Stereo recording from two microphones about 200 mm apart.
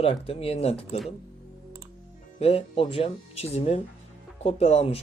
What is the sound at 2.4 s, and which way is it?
Speech, 30° left (ahead or behind).